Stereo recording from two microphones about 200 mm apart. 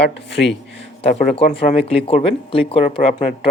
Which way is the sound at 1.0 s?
30° left (ahead or behind).